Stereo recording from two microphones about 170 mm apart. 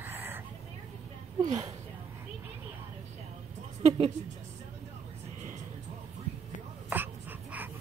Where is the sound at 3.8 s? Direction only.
40° right (ahead or behind).